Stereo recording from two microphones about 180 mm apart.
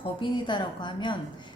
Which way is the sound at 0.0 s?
25° left (ahead or behind).